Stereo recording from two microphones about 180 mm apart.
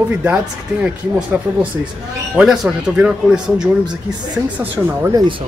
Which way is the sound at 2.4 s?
5° right (ahead or behind).